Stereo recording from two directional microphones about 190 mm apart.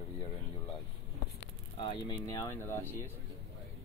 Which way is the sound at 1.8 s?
25° left (ahead or behind).